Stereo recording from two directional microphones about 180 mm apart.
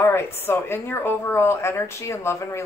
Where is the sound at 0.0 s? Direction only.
15° left (ahead or behind).